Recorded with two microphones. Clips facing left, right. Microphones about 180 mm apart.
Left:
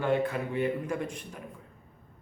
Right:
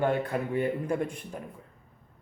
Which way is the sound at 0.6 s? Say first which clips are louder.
Right 1 dB; 30° right (ahead or behind).